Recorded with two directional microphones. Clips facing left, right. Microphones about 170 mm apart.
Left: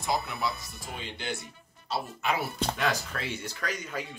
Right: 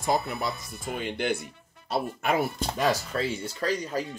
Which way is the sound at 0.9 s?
55° right (ahead or behind).